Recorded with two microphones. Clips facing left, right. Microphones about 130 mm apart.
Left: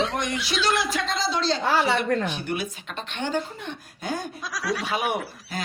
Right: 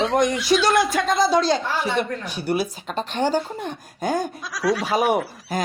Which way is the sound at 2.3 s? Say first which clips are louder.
Right 6 dB; 40° right (ahead or behind).